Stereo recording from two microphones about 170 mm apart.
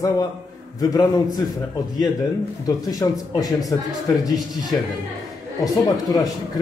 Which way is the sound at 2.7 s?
20° left (ahead or behind).